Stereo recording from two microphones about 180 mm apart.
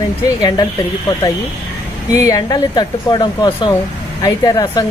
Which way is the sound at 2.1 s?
20° left (ahead or behind).